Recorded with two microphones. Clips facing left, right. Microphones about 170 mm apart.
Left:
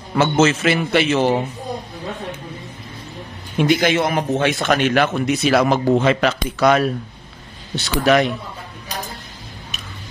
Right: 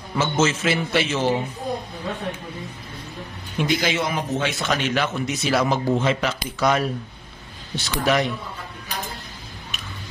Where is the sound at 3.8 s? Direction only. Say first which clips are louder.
Left 6 dB; 55° left (ahead or behind); by 8.3 s 70° left (ahead or behind).